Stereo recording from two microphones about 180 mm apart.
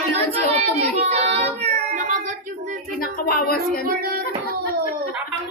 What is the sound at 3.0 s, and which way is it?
Speech, 55° left (ahead or behind).